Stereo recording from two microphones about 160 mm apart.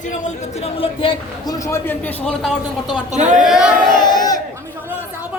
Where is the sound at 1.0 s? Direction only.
30° left (ahead or behind).